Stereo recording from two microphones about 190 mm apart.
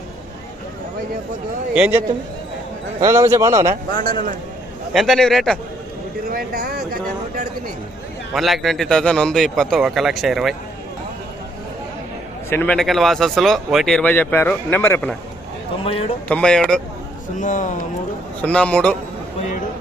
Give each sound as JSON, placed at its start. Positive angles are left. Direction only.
{"t": 1.7, "sound": "a man's voice", "side_deg": -10}
{"t": 4.9, "sound": "speech", "side_deg": 0}
{"t": 6.2, "sound": "speech", "side_deg": -50}
{"t": 8.3, "sound": "speech", "side_deg": 0}
{"t": 12.5, "sound": "speech", "side_deg": 10}
{"t": 15.8, "sound": "a man's voice", "side_deg": 30}
{"t": 16.3, "sound": "speech", "side_deg": 5}
{"t": 17.3, "sound": "speech", "side_deg": 40}
{"t": 18.4, "sound": "a man's voice", "side_deg": 5}